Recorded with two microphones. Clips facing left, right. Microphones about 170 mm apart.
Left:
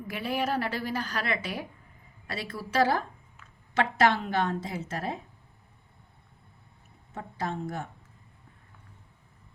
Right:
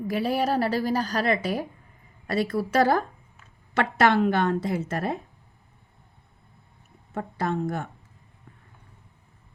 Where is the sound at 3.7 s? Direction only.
55° right (ahead or behind).